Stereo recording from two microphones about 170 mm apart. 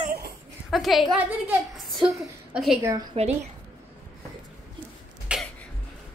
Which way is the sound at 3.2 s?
35° right (ahead or behind).